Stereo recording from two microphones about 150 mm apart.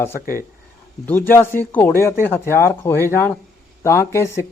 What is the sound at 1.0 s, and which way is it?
Speech, 15° left (ahead or behind).